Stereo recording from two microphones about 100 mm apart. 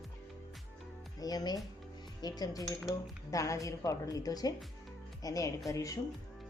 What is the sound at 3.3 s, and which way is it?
A woman's voice, 30° left (ahead or behind).